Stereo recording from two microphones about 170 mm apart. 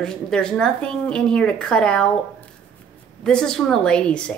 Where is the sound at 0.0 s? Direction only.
5° left (ahead or behind).